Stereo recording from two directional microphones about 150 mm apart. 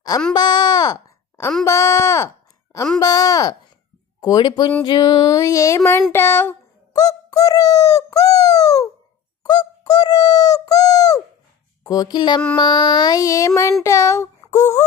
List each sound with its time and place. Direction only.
0.3 s a child's voice: 25° left (ahead or behind)
3.0 s music: 25° left (ahead or behind)
6.1 s a sound: 15° left (ahead or behind)
11.8 s speech: 25° left (ahead or behind)
12.5 s music: 30° left (ahead or behind)
13.8 s speech: 20° left (ahead or behind)